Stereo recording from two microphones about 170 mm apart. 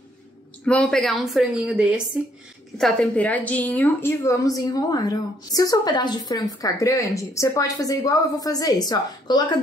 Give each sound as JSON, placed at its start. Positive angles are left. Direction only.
{"t": 0.7, "sound": "speech", "side_deg": 5}
{"t": 2.8, "sound": "a woman's voice", "side_deg": 5}